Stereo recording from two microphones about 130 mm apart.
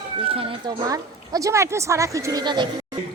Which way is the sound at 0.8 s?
25° right (ahead or behind).